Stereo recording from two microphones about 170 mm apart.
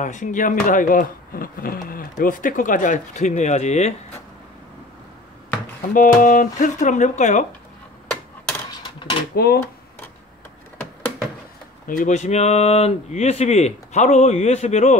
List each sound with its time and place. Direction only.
0.0 s speech: 45° left (ahead or behind)
5.9 s speech: 55° left (ahead or behind)
8.1 s a sound: 10° left (ahead or behind)
9.3 s speech: 65° left (ahead or behind)
11.9 s speech: 45° left (ahead or behind)